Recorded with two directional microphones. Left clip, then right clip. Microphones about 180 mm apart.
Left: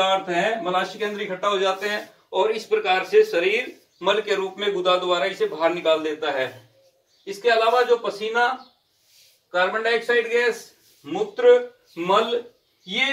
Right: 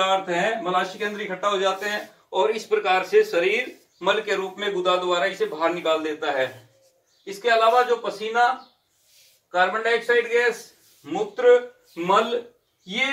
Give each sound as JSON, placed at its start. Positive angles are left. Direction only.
{"t": 0.0, "sound": "a man's voice", "side_deg": 0}
{"t": 2.5, "sound": "speech", "side_deg": -15}
{"t": 3.4, "sound": "a man's voice", "side_deg": 0}
{"t": 9.8, "sound": "a man's voice", "side_deg": 0}